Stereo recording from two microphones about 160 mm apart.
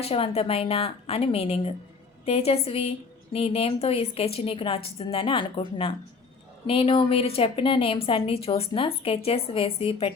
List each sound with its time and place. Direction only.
0.0 s a woman's voice: 40° left (ahead or behind)